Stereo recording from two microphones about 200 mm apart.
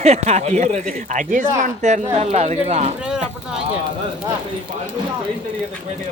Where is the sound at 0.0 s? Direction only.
30° right (ahead or behind).